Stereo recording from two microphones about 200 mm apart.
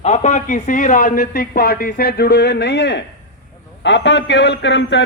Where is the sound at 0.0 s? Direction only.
35° left (ahead or behind).